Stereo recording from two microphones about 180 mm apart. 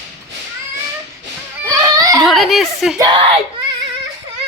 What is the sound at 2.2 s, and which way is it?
Speech, centre (ahead or behind).